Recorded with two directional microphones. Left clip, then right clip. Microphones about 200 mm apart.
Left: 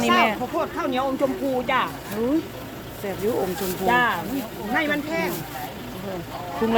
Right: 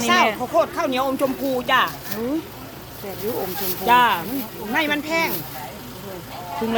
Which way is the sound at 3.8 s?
60° right (ahead or behind).